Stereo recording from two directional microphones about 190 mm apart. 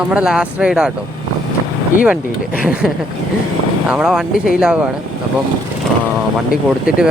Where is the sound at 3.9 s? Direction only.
5° right (ahead or behind).